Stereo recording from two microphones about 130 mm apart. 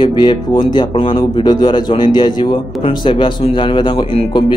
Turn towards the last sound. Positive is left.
turn(degrees=45)  # may be behind; listen again after turning